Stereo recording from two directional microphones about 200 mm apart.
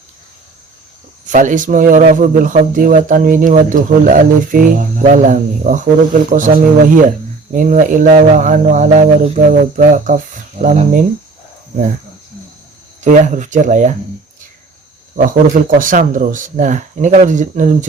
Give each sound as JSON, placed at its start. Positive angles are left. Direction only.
{"t": 1.3, "sound": "speech", "side_deg": -40}
{"t": 13.1, "sound": "speech", "side_deg": -40}
{"t": 15.2, "sound": "speech", "side_deg": -40}